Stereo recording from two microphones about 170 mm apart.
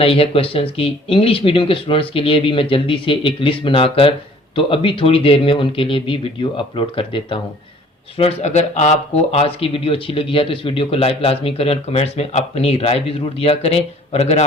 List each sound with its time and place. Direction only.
0.0 s speech: 35° left (ahead or behind)